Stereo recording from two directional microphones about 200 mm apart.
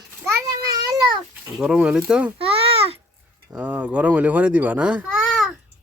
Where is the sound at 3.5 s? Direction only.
5° right (ahead or behind).